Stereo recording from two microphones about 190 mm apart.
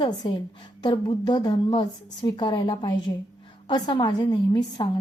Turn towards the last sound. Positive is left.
turn(degrees=25)  # may be behind; listen again after turning